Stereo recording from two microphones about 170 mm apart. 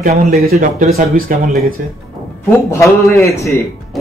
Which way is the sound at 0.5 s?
40° right (ahead or behind).